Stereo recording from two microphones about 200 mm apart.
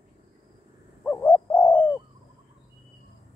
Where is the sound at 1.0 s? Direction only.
10° left (ahead or behind).